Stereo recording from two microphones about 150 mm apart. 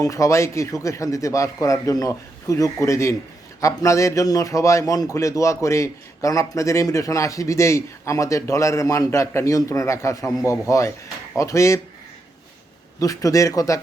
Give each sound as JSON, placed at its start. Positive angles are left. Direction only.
{"t": 0.0, "sound": "a man's voice", "side_deg": 20}
{"t": 13.0, "sound": "a man's voice", "side_deg": 20}